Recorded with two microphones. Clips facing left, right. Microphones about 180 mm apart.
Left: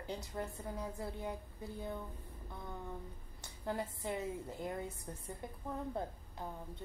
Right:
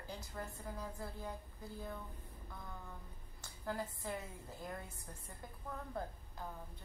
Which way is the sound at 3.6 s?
20° left (ahead or behind).